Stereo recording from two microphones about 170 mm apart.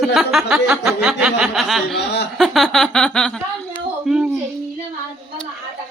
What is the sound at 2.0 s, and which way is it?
Chuckle, 80° left.